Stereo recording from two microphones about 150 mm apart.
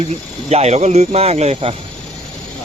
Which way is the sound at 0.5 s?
50° right (ahead or behind).